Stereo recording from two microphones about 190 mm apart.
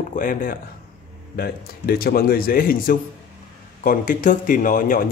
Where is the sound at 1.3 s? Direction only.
55° left (ahead or behind).